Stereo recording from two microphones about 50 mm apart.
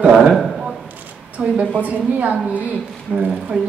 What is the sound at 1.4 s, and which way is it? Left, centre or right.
A woman's voice, right.